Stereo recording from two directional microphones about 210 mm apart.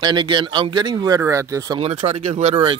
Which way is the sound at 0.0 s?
20° right (ahead or behind).